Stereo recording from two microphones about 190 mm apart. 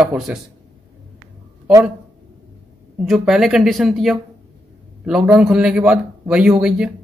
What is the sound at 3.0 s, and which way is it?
Speech, centre (ahead or behind).